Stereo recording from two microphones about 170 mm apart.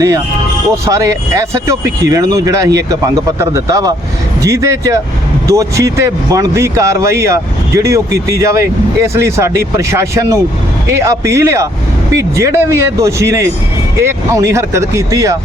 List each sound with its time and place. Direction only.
0.9 s speech: 20° right (ahead or behind)